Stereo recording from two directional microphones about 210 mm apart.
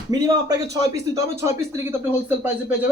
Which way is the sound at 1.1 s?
15° right (ahead or behind).